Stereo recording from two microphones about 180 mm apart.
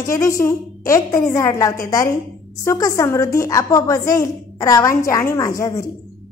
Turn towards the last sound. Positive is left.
turn(degrees=15)  # may be behind; listen again after turning